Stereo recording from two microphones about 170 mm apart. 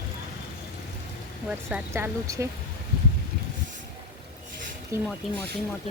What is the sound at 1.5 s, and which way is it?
Speech, 10° right (ahead or behind).